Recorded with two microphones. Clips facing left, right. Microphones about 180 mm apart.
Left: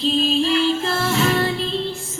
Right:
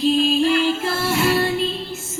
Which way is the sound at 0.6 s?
10° right (ahead or behind).